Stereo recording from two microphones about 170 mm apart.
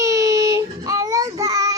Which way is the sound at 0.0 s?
20° right (ahead or behind).